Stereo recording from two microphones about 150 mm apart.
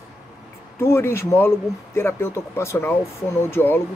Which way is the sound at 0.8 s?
15° left (ahead or behind).